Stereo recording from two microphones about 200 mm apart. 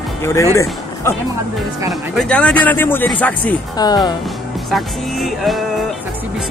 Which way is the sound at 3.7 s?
20° left (ahead or behind).